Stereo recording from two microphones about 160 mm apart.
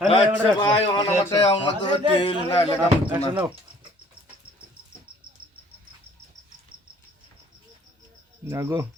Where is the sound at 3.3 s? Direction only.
10° right (ahead or behind).